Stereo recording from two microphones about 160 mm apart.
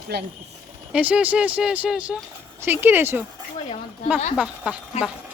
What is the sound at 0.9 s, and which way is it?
Speech, 10° right (ahead or behind).